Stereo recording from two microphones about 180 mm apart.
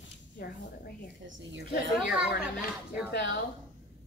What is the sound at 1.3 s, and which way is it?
Speech, 90° right.